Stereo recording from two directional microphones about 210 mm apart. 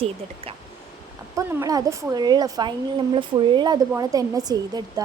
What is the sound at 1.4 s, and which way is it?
A woman's voice, 15° right (ahead or behind).